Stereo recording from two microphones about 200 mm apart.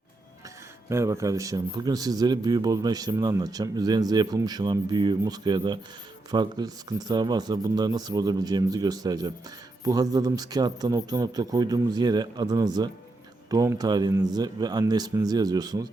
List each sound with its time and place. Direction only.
0.9 s a man's voice: 15° right (ahead or behind)